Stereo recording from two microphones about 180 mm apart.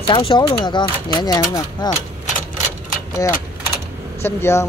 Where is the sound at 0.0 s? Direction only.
30° left (ahead or behind).